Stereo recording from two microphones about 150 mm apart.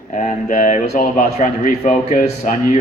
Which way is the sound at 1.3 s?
50° left (ahead or behind).